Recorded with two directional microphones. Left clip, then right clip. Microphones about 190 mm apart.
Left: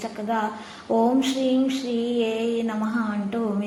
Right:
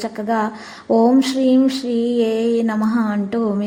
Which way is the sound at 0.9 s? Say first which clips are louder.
Right 6 dB; 20° right (ahead or behind).